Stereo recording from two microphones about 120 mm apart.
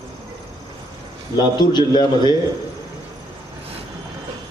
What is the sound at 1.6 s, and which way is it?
Speech, 40° left (ahead or behind).